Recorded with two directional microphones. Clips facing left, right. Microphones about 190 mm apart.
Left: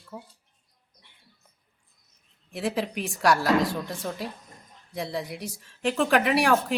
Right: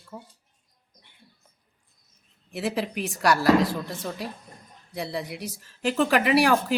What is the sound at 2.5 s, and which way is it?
Speech, centre (ahead or behind).